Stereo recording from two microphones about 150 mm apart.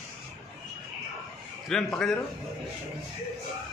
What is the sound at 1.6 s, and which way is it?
Speech, 5° left (ahead or behind).